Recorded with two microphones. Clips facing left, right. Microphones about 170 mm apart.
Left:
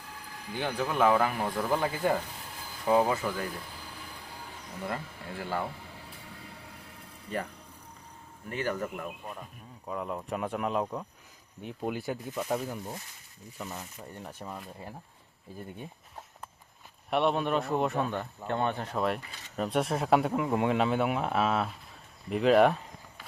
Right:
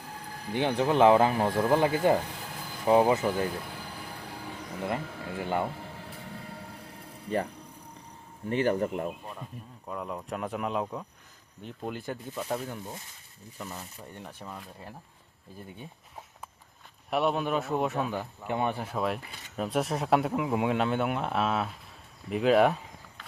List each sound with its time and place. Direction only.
0.5 s speech: 25° right (ahead or behind)
5.4 s speech: 20° right (ahead or behind)
8.4 s speech: 30° right (ahead or behind)
9.4 s a man's voice: centre (ahead or behind)
17.1 s a man's voice: centre (ahead or behind)